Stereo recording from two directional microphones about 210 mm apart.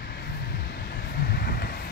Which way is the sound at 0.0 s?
50° left (ahead or behind).